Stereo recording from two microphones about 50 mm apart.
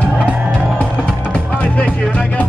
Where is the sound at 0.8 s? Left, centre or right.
Left.